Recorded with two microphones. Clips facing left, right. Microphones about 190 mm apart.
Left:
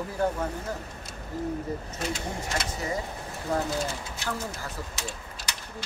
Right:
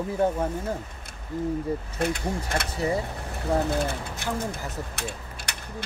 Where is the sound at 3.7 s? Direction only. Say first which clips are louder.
Right 4 dB; 60° right (ahead or behind).